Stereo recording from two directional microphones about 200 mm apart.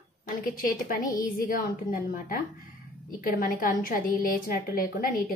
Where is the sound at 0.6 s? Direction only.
45° left (ahead or behind).